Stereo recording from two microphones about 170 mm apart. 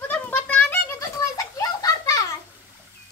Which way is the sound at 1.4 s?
20° left (ahead or behind).